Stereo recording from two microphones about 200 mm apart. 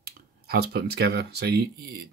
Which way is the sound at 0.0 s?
50° right (ahead or behind).